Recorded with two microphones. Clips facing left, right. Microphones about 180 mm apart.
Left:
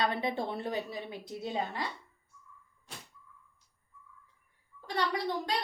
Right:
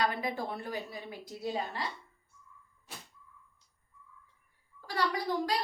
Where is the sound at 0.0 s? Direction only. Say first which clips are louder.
Left 1 dB; 25° left (ahead or behind).